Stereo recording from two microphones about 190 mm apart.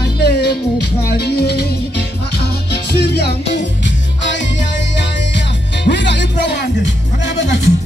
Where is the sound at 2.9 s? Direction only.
55° left (ahead or behind).